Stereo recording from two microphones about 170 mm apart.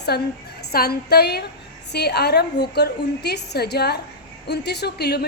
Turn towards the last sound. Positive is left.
turn(degrees=70)  # may be behind; listen again after turning